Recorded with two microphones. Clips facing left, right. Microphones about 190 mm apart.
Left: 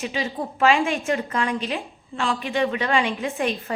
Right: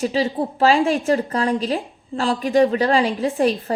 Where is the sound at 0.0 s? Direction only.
35° right (ahead or behind).